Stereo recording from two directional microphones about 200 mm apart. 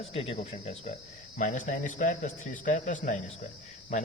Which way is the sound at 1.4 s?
40° left (ahead or behind).